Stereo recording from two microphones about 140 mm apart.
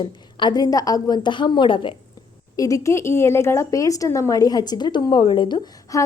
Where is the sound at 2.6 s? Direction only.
20° left (ahead or behind).